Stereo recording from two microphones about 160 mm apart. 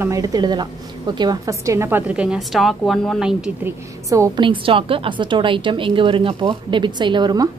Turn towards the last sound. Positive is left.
turn(degrees=-25)  # may be behind; listen again after turning